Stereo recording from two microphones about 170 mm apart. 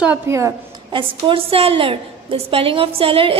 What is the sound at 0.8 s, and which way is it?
A woman's voice, 30° right (ahead or behind).